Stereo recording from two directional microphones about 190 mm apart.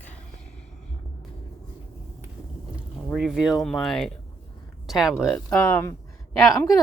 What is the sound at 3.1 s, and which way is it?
Speech, 5° right (ahead or behind).